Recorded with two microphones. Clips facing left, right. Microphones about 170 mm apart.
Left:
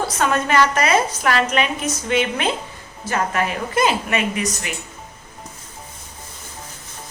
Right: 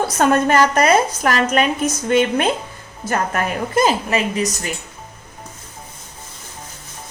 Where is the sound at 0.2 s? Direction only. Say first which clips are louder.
Right 4 dB; 45° right (ahead or behind).